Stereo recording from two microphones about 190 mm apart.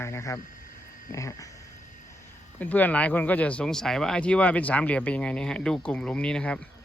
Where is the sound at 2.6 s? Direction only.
10° left (ahead or behind).